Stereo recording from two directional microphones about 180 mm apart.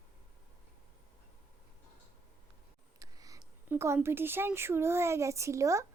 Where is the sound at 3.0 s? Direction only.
20° right (ahead or behind).